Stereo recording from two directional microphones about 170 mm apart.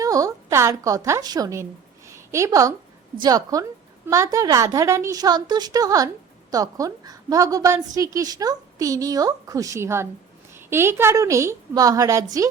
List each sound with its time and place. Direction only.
0.0 s a woman's voice: 20° right (ahead or behind)
2.0 s a sound: 15° right (ahead or behind)
3.2 s a woman's voice: 20° right (ahead or behind)